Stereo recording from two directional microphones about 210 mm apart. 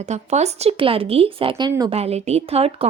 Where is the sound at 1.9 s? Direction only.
30° right (ahead or behind).